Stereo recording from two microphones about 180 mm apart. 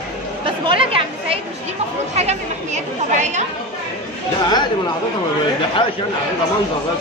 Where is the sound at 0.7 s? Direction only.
30° right (ahead or behind).